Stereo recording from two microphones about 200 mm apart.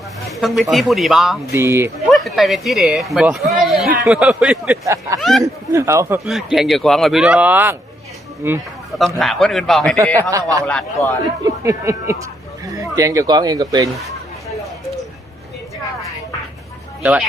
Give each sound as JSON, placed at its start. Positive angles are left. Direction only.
{"t": 0.3, "sound": "speech", "side_deg": 0}
{"t": 1.5, "sound": "a man's voice", "side_deg": -10}
{"t": 2.0, "sound": "a man's voice", "side_deg": 0}
{"t": 6.2, "sound": "a man's voice", "side_deg": 0}
{"t": 9.1, "sound": "speech", "side_deg": 0}
{"t": 10.2, "sound": "a man's voice", "side_deg": -15}
{"t": 10.6, "sound": "speech", "side_deg": 5}
{"t": 11.4, "sound": "a man's voice", "side_deg": -15}
{"t": 17.0, "sound": "speech", "side_deg": -5}